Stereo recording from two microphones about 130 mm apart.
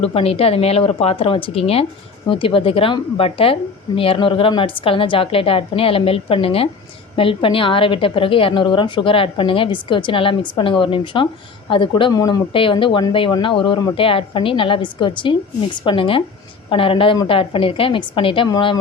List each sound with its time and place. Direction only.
0.0 s speech: 50° left (ahead or behind)